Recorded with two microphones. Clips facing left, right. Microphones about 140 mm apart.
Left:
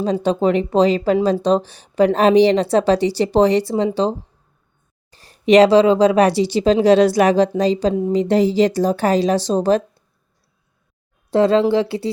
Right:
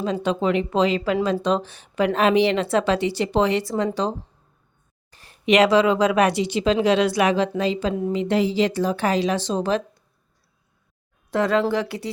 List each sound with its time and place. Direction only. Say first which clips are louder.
0.0 s speech: left 5 dB; 35° left (ahead or behind)
5.1 s speech: left 6 dB; 35° left (ahead or behind)
11.3 s speech: left 6 dB; 30° left (ahead or behind)